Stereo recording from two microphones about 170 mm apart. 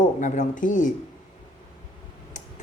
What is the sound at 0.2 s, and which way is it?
Speech, 50° left (ahead or behind).